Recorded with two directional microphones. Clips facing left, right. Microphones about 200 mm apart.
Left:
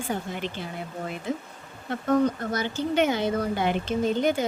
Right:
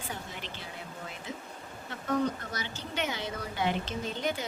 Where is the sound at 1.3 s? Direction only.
55° left (ahead or behind).